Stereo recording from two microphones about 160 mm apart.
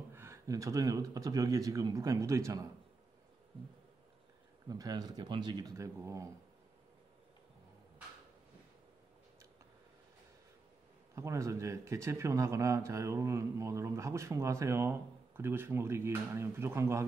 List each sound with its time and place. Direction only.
0.1 s speech: 15° right (ahead or behind)
4.6 s speech: 25° right (ahead or behind)
11.1 s a man's voice: 20° right (ahead or behind)